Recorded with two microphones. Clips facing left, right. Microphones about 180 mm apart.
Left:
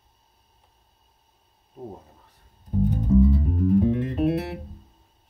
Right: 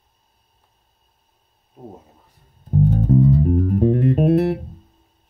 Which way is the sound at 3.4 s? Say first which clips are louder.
Right 3 dB; 55° right (ahead or behind).